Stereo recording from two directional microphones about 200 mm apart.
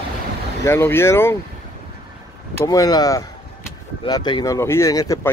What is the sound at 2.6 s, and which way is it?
Speech, 15° left (ahead or behind).